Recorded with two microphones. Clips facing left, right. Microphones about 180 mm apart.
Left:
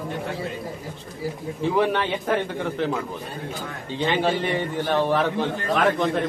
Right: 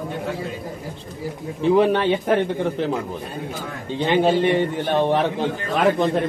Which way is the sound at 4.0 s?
15° right (ahead or behind).